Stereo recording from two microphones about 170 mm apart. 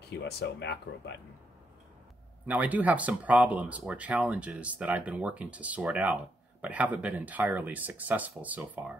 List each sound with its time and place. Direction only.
0.2 s speech: 85° left
2.4 s speech: 10° right (ahead or behind)